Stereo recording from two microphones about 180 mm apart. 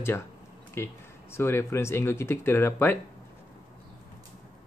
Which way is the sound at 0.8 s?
15° left (ahead or behind).